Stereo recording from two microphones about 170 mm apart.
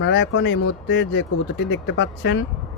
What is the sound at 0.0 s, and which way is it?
Speech, 90° left.